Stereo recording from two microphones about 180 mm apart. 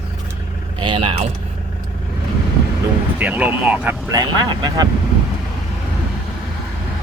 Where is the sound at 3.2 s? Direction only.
10° right (ahead or behind).